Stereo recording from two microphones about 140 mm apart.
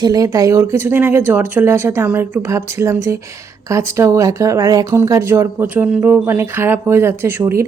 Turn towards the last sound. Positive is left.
turn(degrees=-20)  # may be behind; listen again after turning